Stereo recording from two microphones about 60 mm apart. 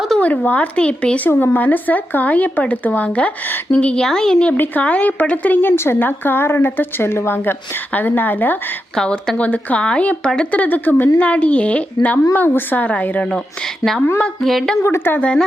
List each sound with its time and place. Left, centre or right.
0.2 s speech: left
1.3 s speech: left
4.0 s a woman's voice: centre
4.5 s speech: left
5.7 s a woman's voice: left
6.0 s a woman's voice: left
9.0 s a woman's voice: centre
9.4 s a woman's voice: left
10.6 s a woman's voice: left
11.2 s speech: left
14.4 s a woman's voice: centre
14.8 s a woman's voice: left
15.2 s a woman's voice: centre